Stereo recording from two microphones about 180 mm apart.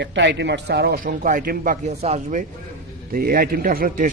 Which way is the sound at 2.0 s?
35° right (ahead or behind).